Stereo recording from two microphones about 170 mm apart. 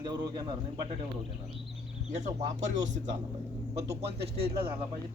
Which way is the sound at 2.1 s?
45° right (ahead or behind).